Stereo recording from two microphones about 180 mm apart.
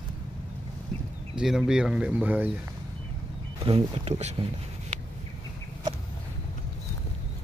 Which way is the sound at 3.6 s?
35° right (ahead or behind).